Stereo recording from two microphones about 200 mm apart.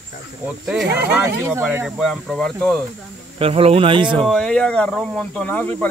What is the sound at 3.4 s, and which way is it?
Speech, 30° right (ahead or behind).